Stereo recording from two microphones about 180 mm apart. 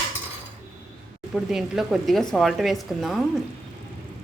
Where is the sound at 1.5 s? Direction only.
Centre (ahead or behind).